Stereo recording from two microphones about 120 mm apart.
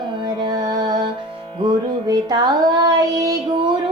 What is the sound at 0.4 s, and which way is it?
Music, 35° right (ahead or behind).